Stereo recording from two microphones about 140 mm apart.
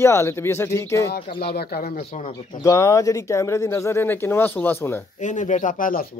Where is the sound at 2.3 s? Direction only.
55° left (ahead or behind).